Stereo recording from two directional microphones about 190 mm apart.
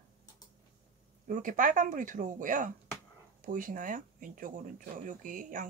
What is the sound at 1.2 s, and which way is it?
Speech, 45° right (ahead or behind).